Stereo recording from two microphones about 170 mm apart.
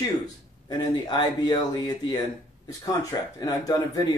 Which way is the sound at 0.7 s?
25° left (ahead or behind).